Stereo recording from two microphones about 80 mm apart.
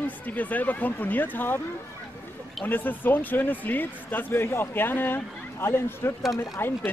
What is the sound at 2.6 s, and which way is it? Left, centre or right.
Speech, left.